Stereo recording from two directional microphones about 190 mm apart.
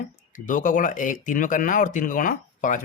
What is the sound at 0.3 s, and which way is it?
Speech, 45° left (ahead or behind).